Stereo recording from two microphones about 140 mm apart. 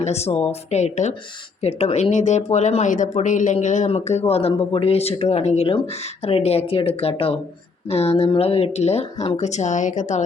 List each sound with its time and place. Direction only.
0.0 s speech: 50° left (ahead or behind)